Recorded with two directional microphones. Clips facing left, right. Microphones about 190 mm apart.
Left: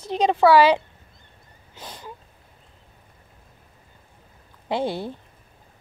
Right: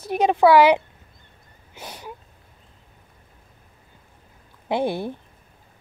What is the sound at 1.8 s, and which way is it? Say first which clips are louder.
Sneeze: right 2 dB; 10° right (ahead or behind).